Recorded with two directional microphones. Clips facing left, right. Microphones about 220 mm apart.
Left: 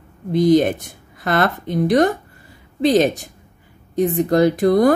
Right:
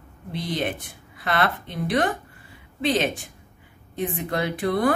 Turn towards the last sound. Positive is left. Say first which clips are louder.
# left 8 dB
turn(degrees=40)  # may be behind; listen again after turning